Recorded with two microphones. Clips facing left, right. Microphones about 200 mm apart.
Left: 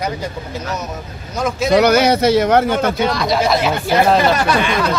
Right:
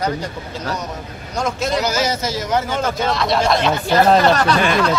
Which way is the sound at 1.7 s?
65° left (ahead or behind).